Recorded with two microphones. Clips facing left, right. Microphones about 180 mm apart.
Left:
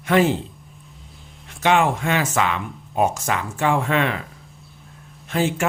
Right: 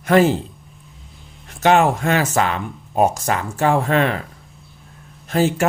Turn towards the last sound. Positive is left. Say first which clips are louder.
# right 4 dB
turn(degrees=-40)  # may be behind; listen again after turning